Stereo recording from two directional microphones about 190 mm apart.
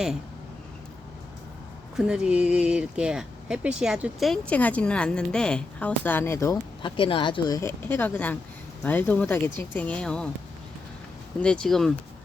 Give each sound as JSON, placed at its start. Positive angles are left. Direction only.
{"t": 2.0, "sound": "speech", "side_deg": -5}
{"t": 6.8, "sound": "speech", "side_deg": 25}
{"t": 11.3, "sound": "speech", "side_deg": 5}